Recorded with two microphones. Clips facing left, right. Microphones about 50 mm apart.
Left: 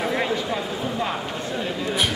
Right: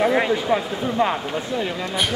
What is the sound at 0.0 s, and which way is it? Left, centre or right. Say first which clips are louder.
Speech: right 5 dB; centre.